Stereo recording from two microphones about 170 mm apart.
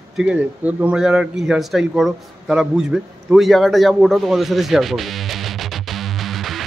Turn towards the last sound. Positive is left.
turn(degrees=0)  # may be behind; listen again after turning